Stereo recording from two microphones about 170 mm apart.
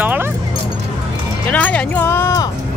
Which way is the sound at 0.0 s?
10° right (ahead or behind).